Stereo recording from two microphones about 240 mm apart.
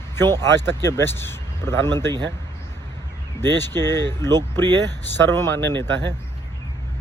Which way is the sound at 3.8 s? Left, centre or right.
Centre.